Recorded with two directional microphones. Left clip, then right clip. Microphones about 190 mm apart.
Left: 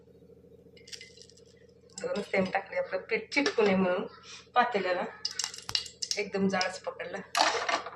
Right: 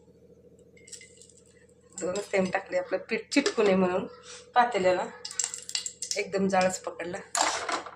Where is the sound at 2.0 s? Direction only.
55° right (ahead or behind).